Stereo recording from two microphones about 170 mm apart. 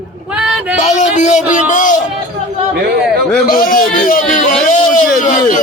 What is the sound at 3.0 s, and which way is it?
Speech, 5° left (ahead or behind).